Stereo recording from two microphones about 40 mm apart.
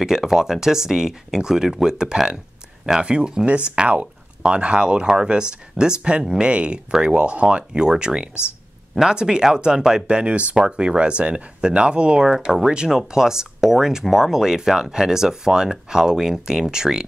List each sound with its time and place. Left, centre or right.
0.0 s speech: centre